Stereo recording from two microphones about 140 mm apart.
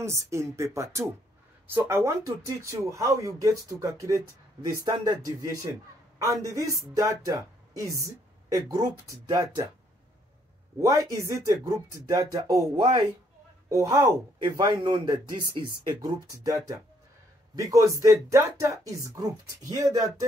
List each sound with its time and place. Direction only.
0.0 s a man's voice: 20° right (ahead or behind)
10.8 s a man's voice: 25° right (ahead or behind)
13.7 s a man's voice: 25° right (ahead or behind)